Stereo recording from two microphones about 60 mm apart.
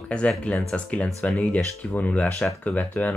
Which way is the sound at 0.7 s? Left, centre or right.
Centre.